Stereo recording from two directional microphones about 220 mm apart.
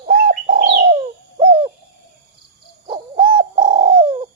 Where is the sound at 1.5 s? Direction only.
25° right (ahead or behind).